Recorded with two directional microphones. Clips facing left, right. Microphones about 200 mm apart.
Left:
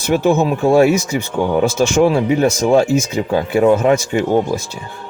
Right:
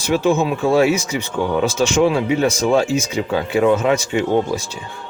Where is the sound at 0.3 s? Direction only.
40° left (ahead or behind).